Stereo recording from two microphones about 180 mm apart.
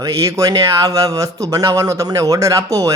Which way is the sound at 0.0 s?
15° right (ahead or behind).